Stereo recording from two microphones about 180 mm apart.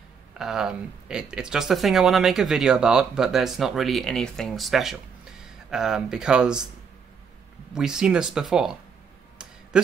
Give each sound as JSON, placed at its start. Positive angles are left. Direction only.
{"t": 0.4, "sound": "speech", "side_deg": 0}
{"t": 7.7, "sound": "speech", "side_deg": -5}